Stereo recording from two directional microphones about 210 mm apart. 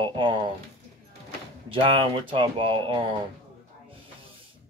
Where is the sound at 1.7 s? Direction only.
25° right (ahead or behind).